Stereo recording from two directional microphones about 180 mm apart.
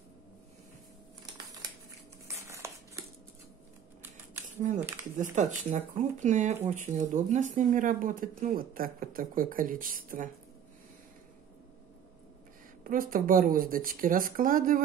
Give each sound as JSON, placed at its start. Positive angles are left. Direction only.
{"t": 2.2, "sound": "a sound", "side_deg": -15}
{"t": 5.1, "sound": "speech", "side_deg": -45}
{"t": 12.8, "sound": "speech", "side_deg": -50}